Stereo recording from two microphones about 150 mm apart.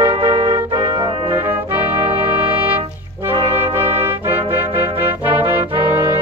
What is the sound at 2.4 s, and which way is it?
Music, 15° right (ahead or behind).